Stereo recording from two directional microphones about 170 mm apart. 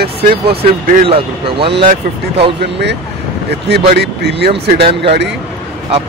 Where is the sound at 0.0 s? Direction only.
70° right (ahead or behind).